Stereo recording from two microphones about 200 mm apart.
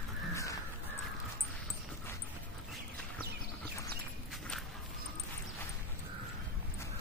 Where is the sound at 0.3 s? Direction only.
15° left (ahead or behind).